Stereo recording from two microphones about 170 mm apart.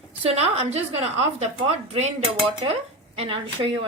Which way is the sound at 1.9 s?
40° right (ahead or behind).